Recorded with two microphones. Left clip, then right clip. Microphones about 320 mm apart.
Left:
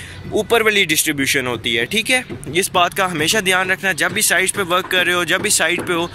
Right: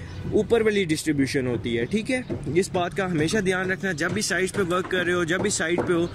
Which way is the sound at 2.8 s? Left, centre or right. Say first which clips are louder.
Left 9 dB; left.